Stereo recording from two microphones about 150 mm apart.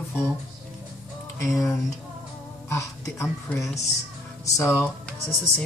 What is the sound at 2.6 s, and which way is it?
A woman's voice, 20° left (ahead or behind).